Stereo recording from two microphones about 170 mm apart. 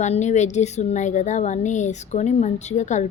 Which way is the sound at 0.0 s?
45° left (ahead or behind).